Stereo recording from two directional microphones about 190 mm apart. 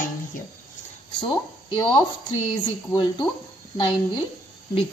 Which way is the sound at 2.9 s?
25° left (ahead or behind).